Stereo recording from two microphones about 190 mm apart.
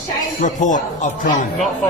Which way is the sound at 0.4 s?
40° left (ahead or behind).